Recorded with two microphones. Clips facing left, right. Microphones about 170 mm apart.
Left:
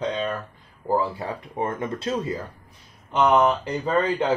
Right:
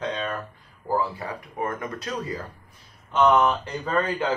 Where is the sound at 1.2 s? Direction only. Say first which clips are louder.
Left 2 dB; 25° left (ahead or behind).